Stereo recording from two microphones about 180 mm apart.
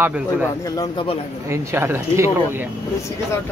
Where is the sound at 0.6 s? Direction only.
20° left (ahead or behind).